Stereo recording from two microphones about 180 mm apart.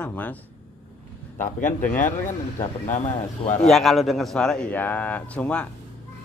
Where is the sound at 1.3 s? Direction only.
45° left (ahead or behind).